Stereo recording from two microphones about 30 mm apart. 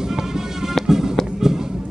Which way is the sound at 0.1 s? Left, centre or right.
Centre.